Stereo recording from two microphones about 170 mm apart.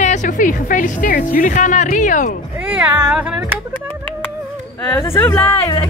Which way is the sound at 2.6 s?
5° right (ahead or behind).